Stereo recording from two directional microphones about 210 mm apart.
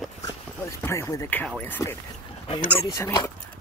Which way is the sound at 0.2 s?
15° left (ahead or behind).